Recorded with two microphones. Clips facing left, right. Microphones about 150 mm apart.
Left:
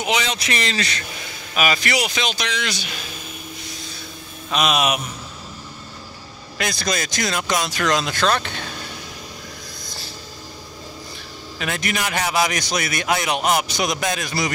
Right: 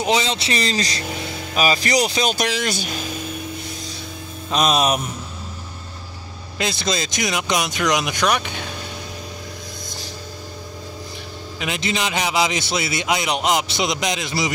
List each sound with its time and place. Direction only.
0.0 s speech: 30° right (ahead or behind)
4.5 s speech: 35° right (ahead or behind)
6.6 s a man's voice: 25° right (ahead or behind)
11.6 s a man's voice: 20° right (ahead or behind)